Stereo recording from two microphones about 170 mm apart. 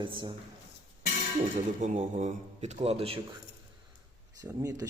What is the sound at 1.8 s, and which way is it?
Speech, 45° right (ahead or behind).